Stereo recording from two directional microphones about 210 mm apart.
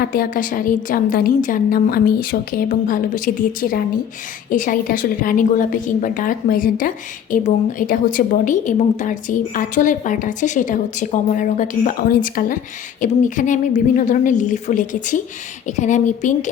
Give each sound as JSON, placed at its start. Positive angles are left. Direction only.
{"t": 0.0, "sound": "a woman's voice", "side_deg": 45}